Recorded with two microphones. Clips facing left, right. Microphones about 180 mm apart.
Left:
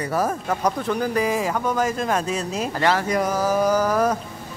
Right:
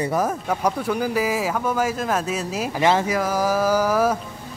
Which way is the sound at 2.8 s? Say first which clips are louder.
Right 3 dB; 20° right (ahead or behind).